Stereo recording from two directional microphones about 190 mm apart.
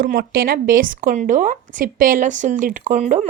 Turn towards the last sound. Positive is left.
turn(degrees=-35)  # may be behind; listen again after turning